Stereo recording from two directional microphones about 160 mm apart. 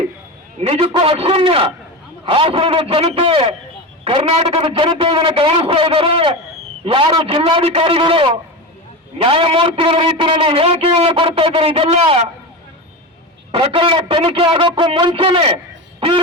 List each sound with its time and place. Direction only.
0.6 s a man's voice: 40° right (ahead or behind)
13.5 s a man's voice: 35° right (ahead or behind)